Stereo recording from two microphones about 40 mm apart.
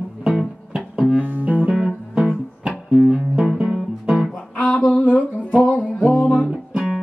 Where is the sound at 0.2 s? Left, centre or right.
Centre.